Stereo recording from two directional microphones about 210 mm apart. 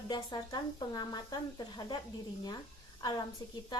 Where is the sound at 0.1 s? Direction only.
20° left (ahead or behind).